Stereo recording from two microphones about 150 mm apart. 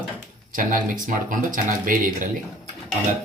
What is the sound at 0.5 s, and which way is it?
Speech, 65° right (ahead or behind).